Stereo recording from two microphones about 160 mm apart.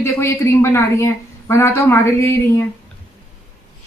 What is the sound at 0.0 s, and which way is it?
A woman's voice, 15° left (ahead or behind).